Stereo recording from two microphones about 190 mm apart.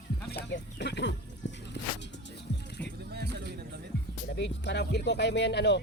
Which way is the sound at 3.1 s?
60° right (ahead or behind).